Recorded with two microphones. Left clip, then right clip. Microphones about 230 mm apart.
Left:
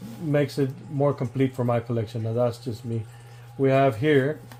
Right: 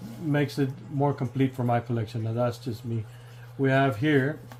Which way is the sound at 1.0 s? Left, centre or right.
Left.